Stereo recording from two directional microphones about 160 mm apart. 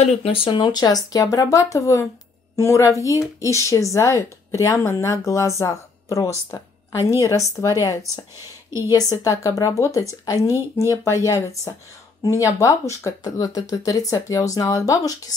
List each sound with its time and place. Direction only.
0.0 s a woman's voice: 40° left (ahead or behind); by 8.0 s 20° left (ahead or behind)
9.2 s a woman's voice: 20° left (ahead or behind)